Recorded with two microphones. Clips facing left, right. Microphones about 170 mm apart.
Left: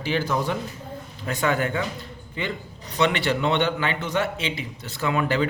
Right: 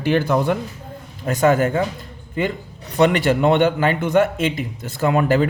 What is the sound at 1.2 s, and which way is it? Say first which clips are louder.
A man's voice: right 8 dB; 45° right (ahead or behind).